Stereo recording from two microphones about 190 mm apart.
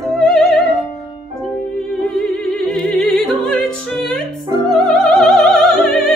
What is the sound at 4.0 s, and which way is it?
Music, centre (ahead or behind).